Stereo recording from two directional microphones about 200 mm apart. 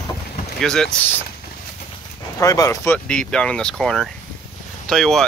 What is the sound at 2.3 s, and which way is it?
Speech, 15° left (ahead or behind).